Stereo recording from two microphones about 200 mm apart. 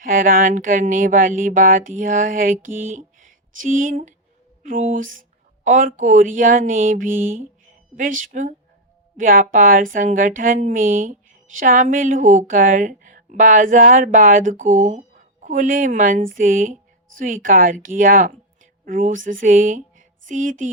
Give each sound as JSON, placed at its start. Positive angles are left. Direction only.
{"t": 0.0, "sound": "a woman's voice", "side_deg": -45}